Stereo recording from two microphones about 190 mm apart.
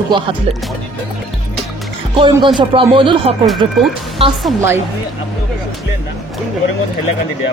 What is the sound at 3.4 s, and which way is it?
Speech, centre (ahead or behind).